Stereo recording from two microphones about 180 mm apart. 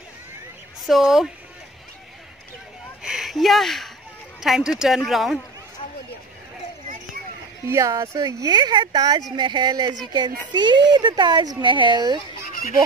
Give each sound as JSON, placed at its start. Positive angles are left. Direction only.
{"t": 0.8, "sound": "speech", "side_deg": 0}
{"t": 3.0, "sound": "a sound", "side_deg": -5}
{"t": 4.4, "sound": "speech", "side_deg": 0}
{"t": 7.6, "sound": "speech", "side_deg": -15}